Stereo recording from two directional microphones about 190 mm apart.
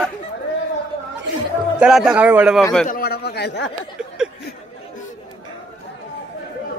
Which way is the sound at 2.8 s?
50° left (ahead or behind).